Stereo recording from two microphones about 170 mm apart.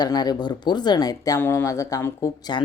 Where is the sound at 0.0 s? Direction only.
25° left (ahead or behind).